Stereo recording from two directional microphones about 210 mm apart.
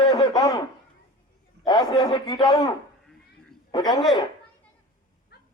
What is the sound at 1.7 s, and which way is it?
A man's voice, 20° left (ahead or behind).